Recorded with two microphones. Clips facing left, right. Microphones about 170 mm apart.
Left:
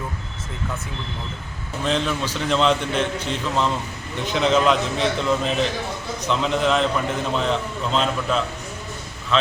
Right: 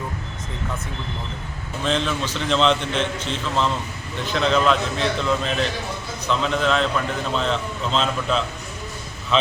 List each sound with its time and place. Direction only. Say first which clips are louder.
1.8 s a man's voice: even; 10° left (ahead or behind)